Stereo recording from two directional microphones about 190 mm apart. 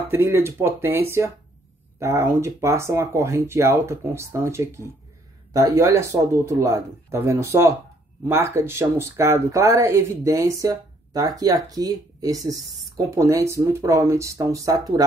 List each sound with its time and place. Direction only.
0.1 s speech: 10° right (ahead or behind)